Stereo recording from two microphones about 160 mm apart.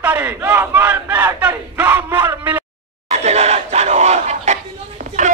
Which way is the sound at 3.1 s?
40° right (ahead or behind).